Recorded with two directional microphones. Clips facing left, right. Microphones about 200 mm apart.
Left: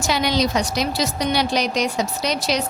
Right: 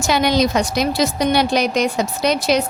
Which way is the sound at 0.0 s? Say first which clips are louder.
Right 4 dB; 50° right (ahead or behind).